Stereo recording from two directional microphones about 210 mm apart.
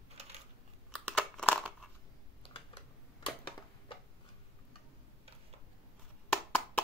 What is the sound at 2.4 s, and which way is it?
Typing, 25° left (ahead or behind).